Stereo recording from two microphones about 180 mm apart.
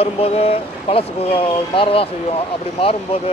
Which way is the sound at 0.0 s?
35° left (ahead or behind).